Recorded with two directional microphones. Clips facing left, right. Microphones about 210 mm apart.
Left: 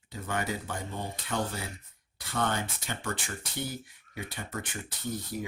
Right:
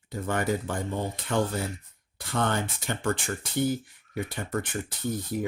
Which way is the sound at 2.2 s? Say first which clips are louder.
Right 3 dB; 50° right (ahead or behind).